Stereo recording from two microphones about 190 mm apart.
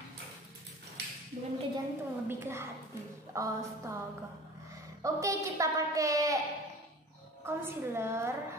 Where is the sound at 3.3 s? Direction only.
15° right (ahead or behind).